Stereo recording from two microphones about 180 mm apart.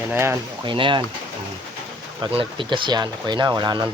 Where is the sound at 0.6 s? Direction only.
25° right (ahead or behind).